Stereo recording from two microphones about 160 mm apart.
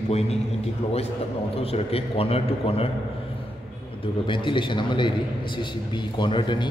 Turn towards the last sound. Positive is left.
turn(degrees=30)  # may be behind; listen again after turning